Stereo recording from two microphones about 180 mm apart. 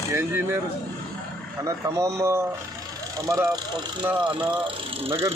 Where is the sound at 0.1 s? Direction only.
10° right (ahead or behind).